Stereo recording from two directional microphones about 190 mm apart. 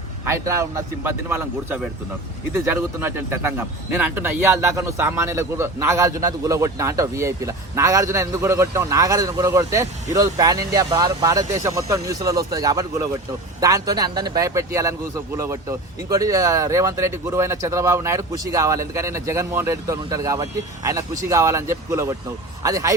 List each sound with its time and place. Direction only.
0.3 s a man's voice: 15° right (ahead or behind)